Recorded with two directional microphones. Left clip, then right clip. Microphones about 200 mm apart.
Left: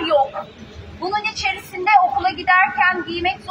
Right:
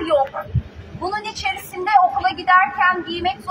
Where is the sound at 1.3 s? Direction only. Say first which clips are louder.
Left 1 dB; 15° right (ahead or behind).